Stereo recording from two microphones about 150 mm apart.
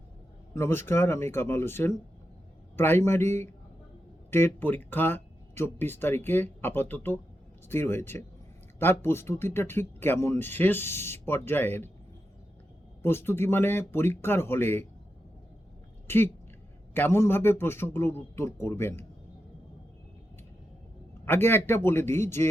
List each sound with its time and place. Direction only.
0.5 s speech: 15° left (ahead or behind)
13.0 s speech: 15° left (ahead or behind)
16.0 s speech: 15° left (ahead or behind)
21.2 s speech: 15° left (ahead or behind)